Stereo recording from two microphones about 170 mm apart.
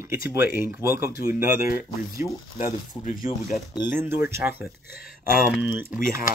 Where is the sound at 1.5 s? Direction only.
60° left (ahead or behind).